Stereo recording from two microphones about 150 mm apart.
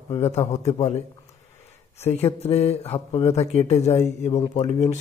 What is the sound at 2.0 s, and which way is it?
Speech, 45° left (ahead or behind).